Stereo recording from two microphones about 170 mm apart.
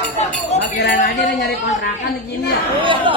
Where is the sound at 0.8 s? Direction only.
75° left (ahead or behind).